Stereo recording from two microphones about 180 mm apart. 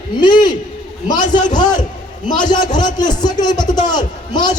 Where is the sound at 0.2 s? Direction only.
25° left (ahead or behind).